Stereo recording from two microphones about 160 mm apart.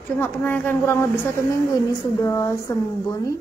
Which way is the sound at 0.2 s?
10° left (ahead or behind).